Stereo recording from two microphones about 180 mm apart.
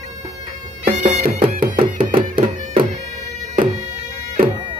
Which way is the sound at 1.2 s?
50° right (ahead or behind).